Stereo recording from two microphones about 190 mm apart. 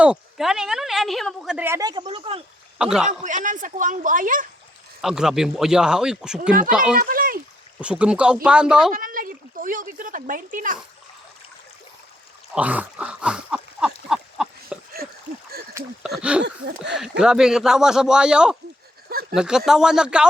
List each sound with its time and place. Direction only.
0.0 s a woman's voice: 5° right (ahead or behind); by 2.4 s 30° right (ahead or behind)
2.7 s a man's voice: 5° right (ahead or behind)
3.1 s speech: 40° right (ahead or behind)
5.0 s a woman's voice: 5° right (ahead or behind)
7.0 s a sound: 50° right (ahead or behind)
7.8 s a woman's voice: 5° right (ahead or behind)
8.9 s speech: 45° right (ahead or behind)
12.5 s a sound: 5° right (ahead or behind)
16.0 s a woman's voice: 5° right (ahead or behind)
16.4 s a sound: 65° right (ahead or behind)
17.0 s a woman's voice: 5° right (ahead or behind)